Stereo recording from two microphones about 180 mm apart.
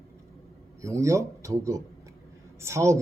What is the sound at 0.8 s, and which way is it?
Speech, 15° right (ahead or behind).